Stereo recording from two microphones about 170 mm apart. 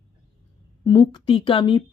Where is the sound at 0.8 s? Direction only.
20° left (ahead or behind).